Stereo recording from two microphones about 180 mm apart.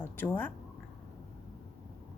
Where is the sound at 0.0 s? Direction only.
10° left (ahead or behind).